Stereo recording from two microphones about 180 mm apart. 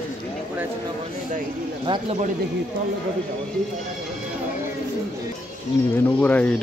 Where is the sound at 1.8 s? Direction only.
30° right (ahead or behind).